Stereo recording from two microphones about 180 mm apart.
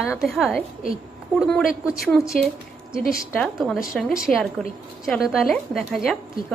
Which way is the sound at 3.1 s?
Centre (ahead or behind).